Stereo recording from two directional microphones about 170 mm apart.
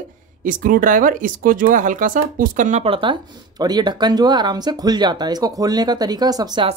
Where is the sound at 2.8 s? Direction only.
30° right (ahead or behind).